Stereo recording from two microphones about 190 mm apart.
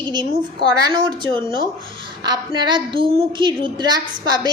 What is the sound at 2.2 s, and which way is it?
A woman's voice, 20° right (ahead or behind).